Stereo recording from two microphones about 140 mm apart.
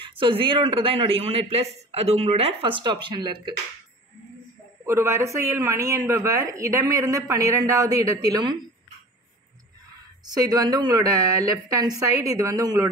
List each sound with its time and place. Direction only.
0.0 s speech: 40° right (ahead or behind)
4.8 s speech: 20° right (ahead or behind)
10.2 s speech: 25° right (ahead or behind)